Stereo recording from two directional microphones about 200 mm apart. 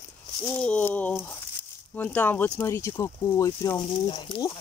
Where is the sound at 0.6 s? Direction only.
5° left (ahead or behind).